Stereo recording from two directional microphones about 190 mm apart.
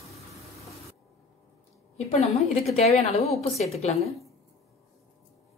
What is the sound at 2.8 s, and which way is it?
A woman's voice, 35° left (ahead or behind).